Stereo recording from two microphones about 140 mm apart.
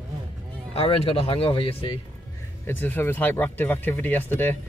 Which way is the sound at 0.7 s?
45° left (ahead or behind).